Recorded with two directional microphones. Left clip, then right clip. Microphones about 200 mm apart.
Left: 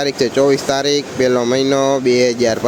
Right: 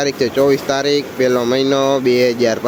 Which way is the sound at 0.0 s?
20° left (ahead or behind).